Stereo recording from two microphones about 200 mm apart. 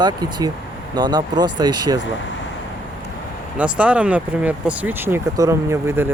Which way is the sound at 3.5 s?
5° right (ahead or behind).